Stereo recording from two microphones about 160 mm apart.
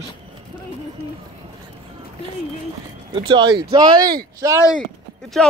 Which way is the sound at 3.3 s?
30° right (ahead or behind).